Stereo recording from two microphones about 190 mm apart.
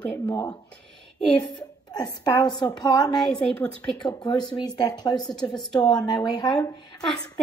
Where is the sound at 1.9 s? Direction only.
20° left (ahead or behind).